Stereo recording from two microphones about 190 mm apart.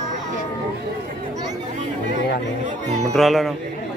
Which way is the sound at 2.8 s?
40° right (ahead or behind).